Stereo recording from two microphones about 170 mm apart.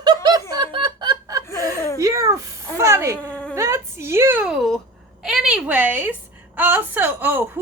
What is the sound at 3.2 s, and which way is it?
Insect, 5° left (ahead or behind).